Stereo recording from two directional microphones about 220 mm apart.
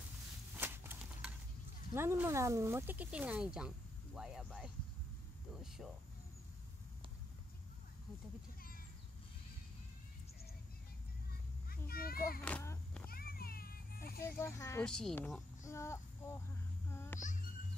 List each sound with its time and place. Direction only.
0.6 s horse: 10° right (ahead or behind)
2.0 s speech: 10° right (ahead or behind)
11.7 s children playing: 40° left (ahead or behind)
12.4 s a sound: 10° left (ahead or behind)
13.1 s music: 45° left (ahead or behind)
14.2 s speech: 10° left (ahead or behind)
15.6 s a sound: 15° left (ahead or behind)
16.9 s music: 10° left (ahead or behind)